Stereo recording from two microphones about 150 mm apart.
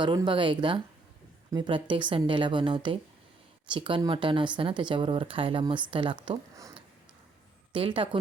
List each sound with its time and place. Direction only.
0.0 s speech: 30° right (ahead or behind)
7.7 s speech: 35° right (ahead or behind)